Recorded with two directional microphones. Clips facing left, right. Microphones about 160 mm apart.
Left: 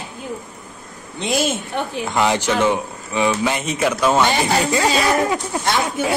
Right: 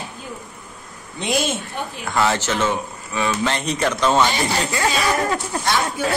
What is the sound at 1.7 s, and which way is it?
Speech, 70° left (ahead or behind).